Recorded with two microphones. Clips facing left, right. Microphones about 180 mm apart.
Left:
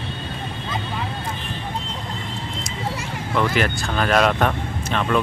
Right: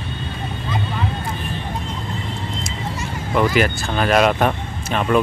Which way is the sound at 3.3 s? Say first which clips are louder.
Right 3 dB; 10° right (ahead or behind).